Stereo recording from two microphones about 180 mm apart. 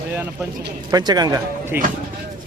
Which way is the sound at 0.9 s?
20° right (ahead or behind).